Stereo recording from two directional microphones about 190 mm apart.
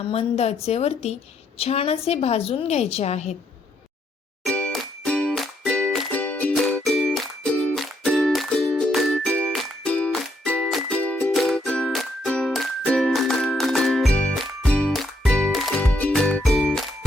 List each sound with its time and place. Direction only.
0.0 s a woman's voice: 30° left (ahead or behind)
4.4 s music: 5° left (ahead or behind)